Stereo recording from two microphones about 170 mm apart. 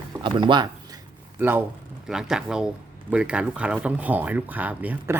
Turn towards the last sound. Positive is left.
turn(degrees=-10)  # may be behind; listen again after turning